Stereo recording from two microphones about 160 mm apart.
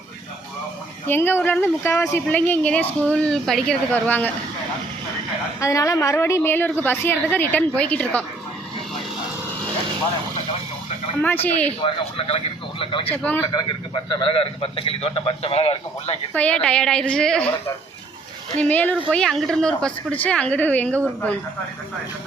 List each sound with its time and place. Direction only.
1.0 s a woman's voice: 15° left (ahead or behind)
5.5 s a woman's voice: 20° left (ahead or behind)
11.4 s a woman's voice: 10° left (ahead or behind)
11.8 s a man's voice: 35° left (ahead or behind)
13.1 s a woman's voice: 10° left (ahead or behind)
13.5 s a man's voice: 30° left (ahead or behind)
16.3 s a woman's voice: 10° left (ahead or behind)
18.6 s a woman's voice: 10° left (ahead or behind)